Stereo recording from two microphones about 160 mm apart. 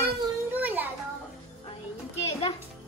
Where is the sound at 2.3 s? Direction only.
40° left (ahead or behind).